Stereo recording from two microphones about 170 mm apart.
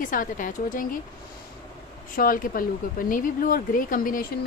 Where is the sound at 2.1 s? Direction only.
55° left (ahead or behind).